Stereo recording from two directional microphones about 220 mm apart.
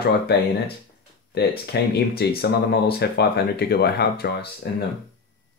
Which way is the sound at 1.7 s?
45° left (ahead or behind).